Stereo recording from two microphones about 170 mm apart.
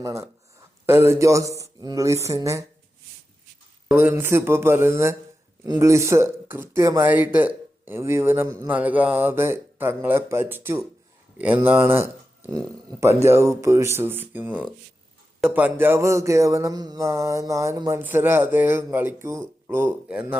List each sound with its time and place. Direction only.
0.0 s speech: 20° right (ahead or behind)
3.8 s speech: 10° right (ahead or behind)